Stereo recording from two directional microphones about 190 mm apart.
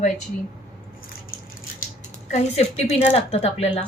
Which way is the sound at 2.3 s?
35° left (ahead or behind).